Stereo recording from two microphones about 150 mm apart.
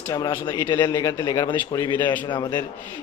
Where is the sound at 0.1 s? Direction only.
20° left (ahead or behind).